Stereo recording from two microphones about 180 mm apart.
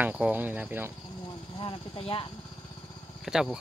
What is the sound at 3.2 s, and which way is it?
Speech, centre (ahead or behind).